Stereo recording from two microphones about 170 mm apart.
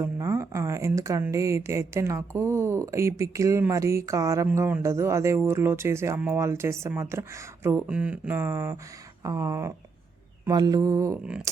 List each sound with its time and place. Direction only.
0.0 s speech: 15° right (ahead or behind)
9.2 s mantra: 20° right (ahead or behind)
11.2 s speech: 5° right (ahead or behind)